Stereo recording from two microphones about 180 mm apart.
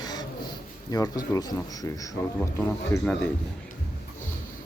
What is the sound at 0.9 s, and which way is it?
Speech, 20° left (ahead or behind).